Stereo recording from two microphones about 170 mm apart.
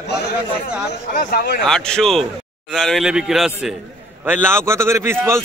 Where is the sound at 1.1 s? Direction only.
55° left (ahead or behind).